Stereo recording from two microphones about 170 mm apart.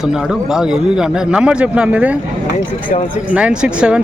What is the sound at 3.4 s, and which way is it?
Speech, 5° right (ahead or behind).